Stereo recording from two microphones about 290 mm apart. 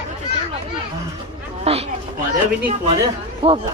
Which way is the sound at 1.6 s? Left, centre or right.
Right.